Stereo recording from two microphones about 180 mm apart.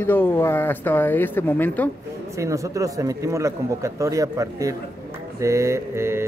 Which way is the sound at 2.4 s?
15° right (ahead or behind).